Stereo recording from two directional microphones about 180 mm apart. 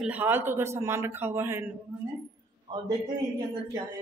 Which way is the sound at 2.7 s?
25° right (ahead or behind).